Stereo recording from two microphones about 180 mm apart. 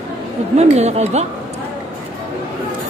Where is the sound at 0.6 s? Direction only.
35° right (ahead or behind).